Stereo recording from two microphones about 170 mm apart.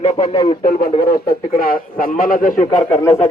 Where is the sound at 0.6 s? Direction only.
50° left (ahead or behind).